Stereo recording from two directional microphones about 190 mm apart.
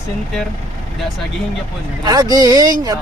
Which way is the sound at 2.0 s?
20° right (ahead or behind).